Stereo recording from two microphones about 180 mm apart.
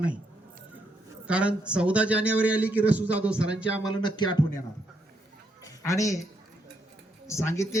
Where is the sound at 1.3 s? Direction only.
5° right (ahead or behind).